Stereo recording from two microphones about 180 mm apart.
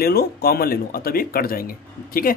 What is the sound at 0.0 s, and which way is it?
Speech, 60° left (ahead or behind).